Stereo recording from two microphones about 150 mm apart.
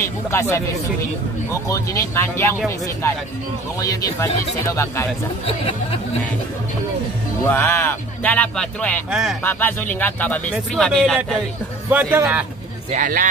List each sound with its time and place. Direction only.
0.0 s speech: 15° left (ahead or behind)
1.7 s speech: 20° left (ahead or behind)
3.8 s speech: 20° left (ahead or behind)
7.4 s speech: 15° left (ahead or behind)
9.1 s speech: 5° right (ahead or behind)
9.4 s speech: 10° left (ahead or behind)
11.9 s a man's voice: 10° right (ahead or behind)
12.9 s speech: 60° right (ahead or behind)